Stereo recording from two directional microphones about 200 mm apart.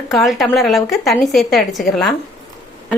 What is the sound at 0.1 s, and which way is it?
A woman's voice, centre (ahead or behind).